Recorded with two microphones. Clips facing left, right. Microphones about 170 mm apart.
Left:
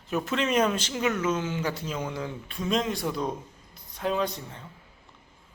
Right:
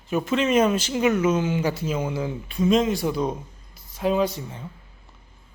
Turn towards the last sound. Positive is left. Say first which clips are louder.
# right 5 dB
turn(degrees=-5)  # may be behind; listen again after turning